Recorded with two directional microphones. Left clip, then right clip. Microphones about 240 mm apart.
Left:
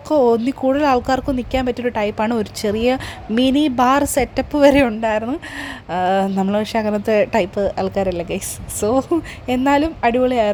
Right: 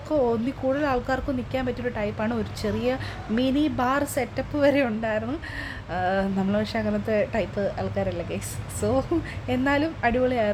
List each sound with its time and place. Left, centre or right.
0.1 s speech: left